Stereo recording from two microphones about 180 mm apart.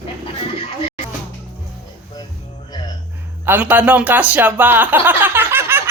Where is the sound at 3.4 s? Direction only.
10° right (ahead or behind).